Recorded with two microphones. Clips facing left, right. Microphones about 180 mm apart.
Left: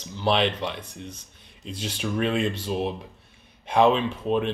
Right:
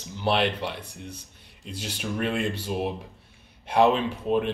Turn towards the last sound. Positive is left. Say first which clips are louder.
# even
turn(degrees=-10)  # may be behind; listen again after turning